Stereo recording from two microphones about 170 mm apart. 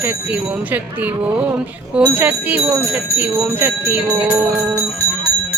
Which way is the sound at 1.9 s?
10° right (ahead or behind).